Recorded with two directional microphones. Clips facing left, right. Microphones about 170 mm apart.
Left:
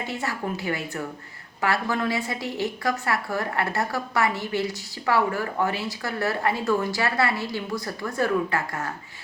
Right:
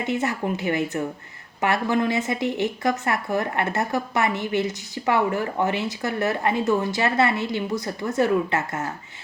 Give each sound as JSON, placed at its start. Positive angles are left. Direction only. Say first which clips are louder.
{"t": 0.0, "sound": "a woman's voice", "louder": "right 5 dB", "side_deg": -20}